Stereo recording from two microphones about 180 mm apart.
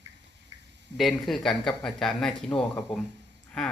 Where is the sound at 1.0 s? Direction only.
Centre (ahead or behind).